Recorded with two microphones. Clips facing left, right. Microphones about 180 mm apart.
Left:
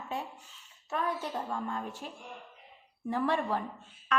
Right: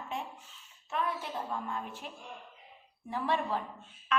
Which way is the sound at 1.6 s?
45° left (ahead or behind).